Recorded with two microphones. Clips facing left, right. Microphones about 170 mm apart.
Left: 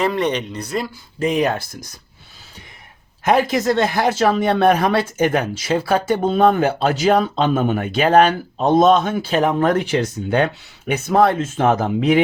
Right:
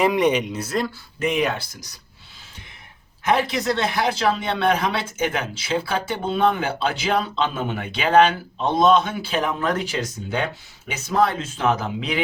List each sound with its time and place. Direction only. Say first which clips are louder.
0.0 s speech: right 1 dB; 10° right (ahead or behind)
1.2 s speech: left 4 dB; 40° left (ahead or behind)
3.2 s speech: left 5 dB; 45° left (ahead or behind)